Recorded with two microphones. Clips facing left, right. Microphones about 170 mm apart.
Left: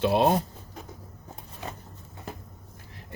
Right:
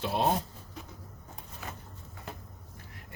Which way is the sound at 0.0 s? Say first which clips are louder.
Left 8 dB; 75° left (ahead or behind).